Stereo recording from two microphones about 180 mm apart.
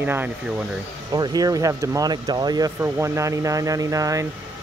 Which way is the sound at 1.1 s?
20° right (ahead or behind).